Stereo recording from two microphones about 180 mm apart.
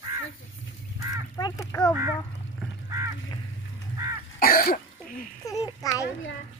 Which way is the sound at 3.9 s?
20° right (ahead or behind).